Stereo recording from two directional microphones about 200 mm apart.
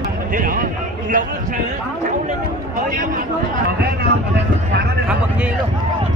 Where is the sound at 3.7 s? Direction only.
55° right (ahead or behind).